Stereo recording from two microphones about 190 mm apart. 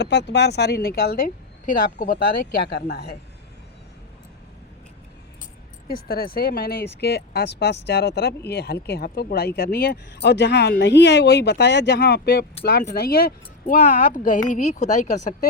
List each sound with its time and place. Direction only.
0.0 s speech: 65° left (ahead or behind)
6.1 s speech: 55° left (ahead or behind)